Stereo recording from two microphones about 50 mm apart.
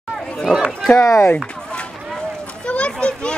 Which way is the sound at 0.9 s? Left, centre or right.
Left.